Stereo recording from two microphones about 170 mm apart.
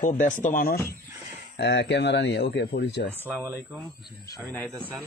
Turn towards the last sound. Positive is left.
turn(degrees=10)  # may be behind; listen again after turning